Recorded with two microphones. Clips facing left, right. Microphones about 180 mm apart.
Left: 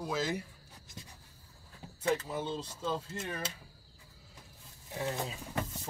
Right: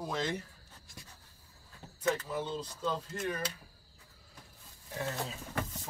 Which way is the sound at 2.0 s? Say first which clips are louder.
Even; 25° left (ahead or behind).